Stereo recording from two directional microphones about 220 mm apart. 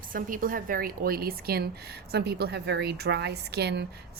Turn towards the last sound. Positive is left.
turn(degrees=-50)  # may be behind; listen again after turning